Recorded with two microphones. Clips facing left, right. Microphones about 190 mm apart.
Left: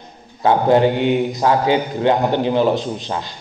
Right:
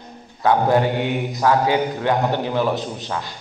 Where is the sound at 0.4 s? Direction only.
25° left (ahead or behind).